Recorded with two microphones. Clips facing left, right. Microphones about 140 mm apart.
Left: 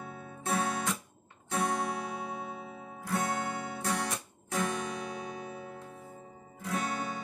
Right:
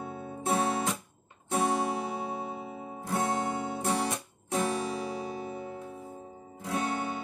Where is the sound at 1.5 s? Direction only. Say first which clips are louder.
Right 4 dB; 30° right (ahead or behind).